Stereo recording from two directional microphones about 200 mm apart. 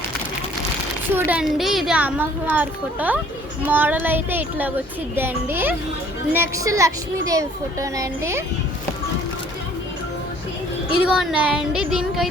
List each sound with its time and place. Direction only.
1.1 s a woman's voice: 5° right (ahead or behind)
11.0 s speech: centre (ahead or behind)